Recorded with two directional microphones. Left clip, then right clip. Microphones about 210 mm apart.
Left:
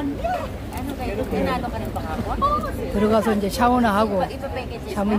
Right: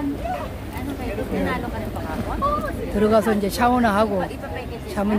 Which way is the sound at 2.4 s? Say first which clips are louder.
Left 2 dB; 45° left (ahead or behind).